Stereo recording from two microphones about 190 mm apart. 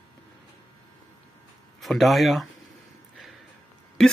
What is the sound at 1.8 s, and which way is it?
Speech, centre (ahead or behind).